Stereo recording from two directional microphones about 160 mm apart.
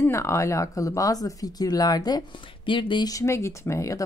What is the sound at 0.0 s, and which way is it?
Speech, 15° left (ahead or behind).